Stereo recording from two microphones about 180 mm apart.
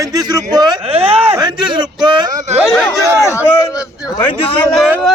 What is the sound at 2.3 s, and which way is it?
Speech, 45° right (ahead or behind).